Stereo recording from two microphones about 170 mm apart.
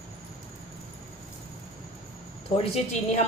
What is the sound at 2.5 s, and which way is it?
Speech, 40° left (ahead or behind).